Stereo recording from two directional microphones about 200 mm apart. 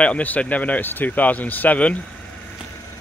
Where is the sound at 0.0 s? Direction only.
5° left (ahead or behind).